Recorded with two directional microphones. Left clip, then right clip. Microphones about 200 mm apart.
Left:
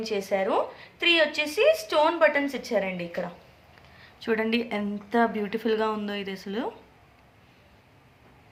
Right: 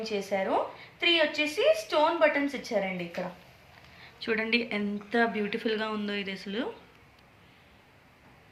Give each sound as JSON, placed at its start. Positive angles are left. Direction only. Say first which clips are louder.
{"t": 0.0, "sound": "a woman's voice", "louder": "left 4 dB", "side_deg": 35}
{"t": 4.3, "sound": "a woman's voice", "louder": "left 2 dB", "side_deg": 40}